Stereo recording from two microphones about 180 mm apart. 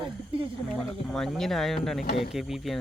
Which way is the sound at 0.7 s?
Centre (ahead or behind).